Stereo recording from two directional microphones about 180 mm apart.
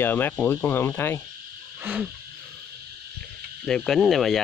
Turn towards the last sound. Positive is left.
turn(degrees=0)  # may be behind; listen again after turning